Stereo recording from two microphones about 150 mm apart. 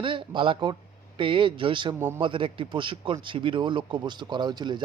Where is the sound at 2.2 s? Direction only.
35° right (ahead or behind).